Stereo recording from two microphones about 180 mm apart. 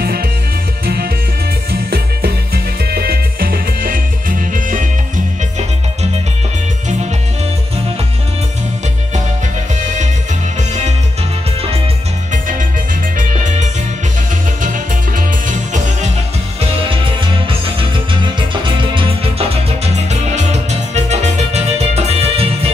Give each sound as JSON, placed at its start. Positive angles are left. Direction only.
{"t": 0.0, "sound": "music", "side_deg": -55}
{"t": 10.7, "sound": "music", "side_deg": -40}
{"t": 12.3, "sound": "music", "side_deg": -45}
{"t": 16.9, "sound": "music", "side_deg": -30}